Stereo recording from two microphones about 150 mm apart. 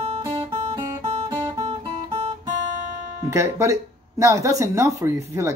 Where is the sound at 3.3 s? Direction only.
20° right (ahead or behind).